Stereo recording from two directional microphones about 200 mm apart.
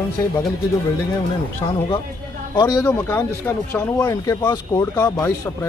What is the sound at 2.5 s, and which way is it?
Speech, 20° left (ahead or behind).